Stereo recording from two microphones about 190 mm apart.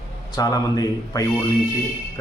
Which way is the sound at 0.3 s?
20° left (ahead or behind).